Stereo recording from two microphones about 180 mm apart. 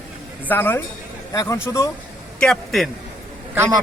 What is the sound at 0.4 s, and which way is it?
Speech, 10° left (ahead or behind).